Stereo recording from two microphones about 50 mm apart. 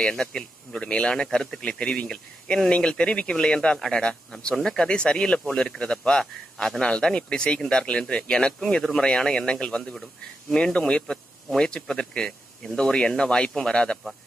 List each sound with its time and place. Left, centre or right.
0.0 s speech: centre